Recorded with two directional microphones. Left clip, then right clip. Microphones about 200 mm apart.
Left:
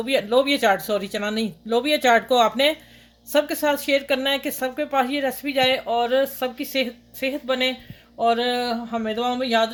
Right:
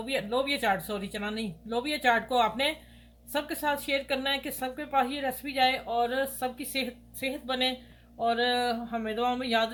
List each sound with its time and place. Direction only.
0.0 s speech: 50° left (ahead or behind)